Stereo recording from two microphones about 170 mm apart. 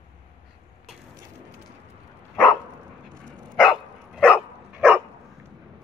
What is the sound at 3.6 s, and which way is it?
Dog, centre (ahead or behind).